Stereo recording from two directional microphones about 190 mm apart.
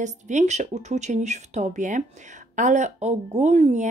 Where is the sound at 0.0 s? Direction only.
40° right (ahead or behind).